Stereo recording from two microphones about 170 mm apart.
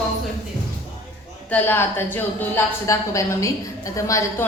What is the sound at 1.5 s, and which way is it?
A woman's voice, 10° left (ahead or behind).